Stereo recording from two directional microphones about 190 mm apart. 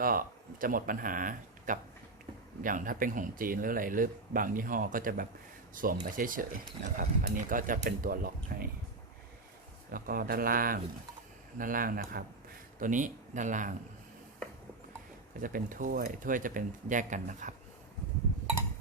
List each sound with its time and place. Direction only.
0.0 s speech: 50° right (ahead or behind)
9.9 s speech: 50° right (ahead or behind)
15.4 s speech: 45° right (ahead or behind)